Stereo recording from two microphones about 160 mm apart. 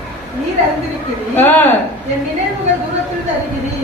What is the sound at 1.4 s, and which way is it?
Speech, 10° left (ahead or behind).